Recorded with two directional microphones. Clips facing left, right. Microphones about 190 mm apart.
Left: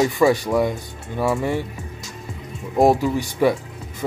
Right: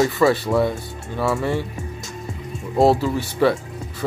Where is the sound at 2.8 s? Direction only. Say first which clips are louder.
Even; 15° left (ahead or behind).